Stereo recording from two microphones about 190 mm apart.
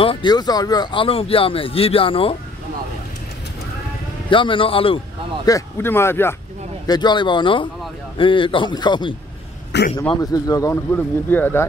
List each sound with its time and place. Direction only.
0.0 s speech: 25° left (ahead or behind)
4.3 s speech: 25° left (ahead or behind)
6.9 s speech: 25° left (ahead or behind)
9.7 s a man's voice: 65° left (ahead or behind)
10.1 s speech: 20° left (ahead or behind)